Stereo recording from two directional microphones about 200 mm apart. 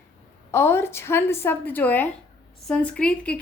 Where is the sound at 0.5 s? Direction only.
10° left (ahead or behind).